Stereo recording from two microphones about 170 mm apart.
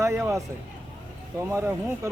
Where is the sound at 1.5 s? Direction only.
15° right (ahead or behind).